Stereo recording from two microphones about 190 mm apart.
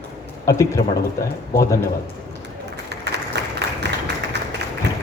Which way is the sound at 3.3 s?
65° right (ahead or behind).